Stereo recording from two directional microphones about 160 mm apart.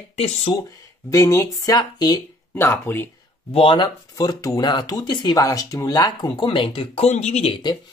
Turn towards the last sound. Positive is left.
turn(degrees=45)  # may be behind; listen again after turning